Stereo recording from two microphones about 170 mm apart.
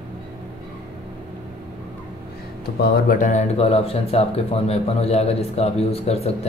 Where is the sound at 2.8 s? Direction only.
60° left (ahead or behind); by 6.3 s 35° left (ahead or behind).